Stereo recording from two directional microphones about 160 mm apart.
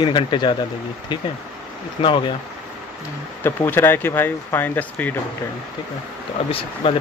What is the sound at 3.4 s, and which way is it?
Speech, 15° left (ahead or behind).